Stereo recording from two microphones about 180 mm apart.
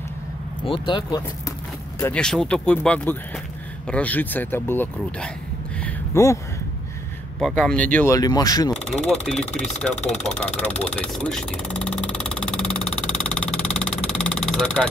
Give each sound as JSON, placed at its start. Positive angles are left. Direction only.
{"t": 0.7, "sound": "speech", "side_deg": 25}
{"t": 2.0, "sound": "speech", "side_deg": 15}
{"t": 7.3, "sound": "speech", "side_deg": 5}
{"t": 9.0, "sound": "speech", "side_deg": 0}
{"t": 10.2, "sound": "vehicle", "side_deg": 5}